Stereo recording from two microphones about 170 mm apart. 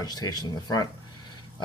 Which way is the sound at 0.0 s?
25° left (ahead or behind).